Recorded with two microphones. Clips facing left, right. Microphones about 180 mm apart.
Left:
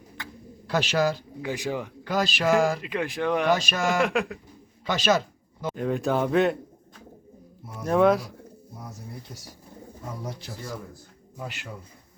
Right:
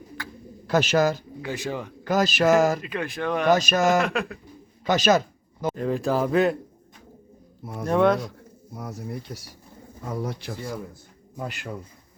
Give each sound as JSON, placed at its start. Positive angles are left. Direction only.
{"t": 0.2, "sound": "bird", "side_deg": 20}
{"t": 0.7, "sound": "speech", "side_deg": -45}
{"t": 1.4, "sound": "speech", "side_deg": 15}
{"t": 2.0, "sound": "speech", "side_deg": -45}
{"t": 2.8, "sound": "speech", "side_deg": 15}
{"t": 3.5, "sound": "speech", "side_deg": -40}
{"t": 4.0, "sound": "speech", "side_deg": 15}
{"t": 4.9, "sound": "a sound", "side_deg": -45}
{"t": 5.7, "sound": "speech", "side_deg": 0}
{"t": 7.9, "sound": "speech", "side_deg": 0}
{"t": 8.8, "sound": "speech", "side_deg": -70}
{"t": 11.3, "sound": "speech", "side_deg": -50}